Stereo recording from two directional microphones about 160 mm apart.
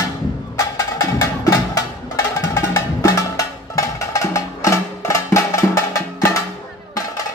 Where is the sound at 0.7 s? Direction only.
20° left (ahead or behind).